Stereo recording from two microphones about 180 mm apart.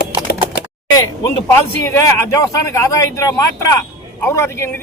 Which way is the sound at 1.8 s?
15° left (ahead or behind).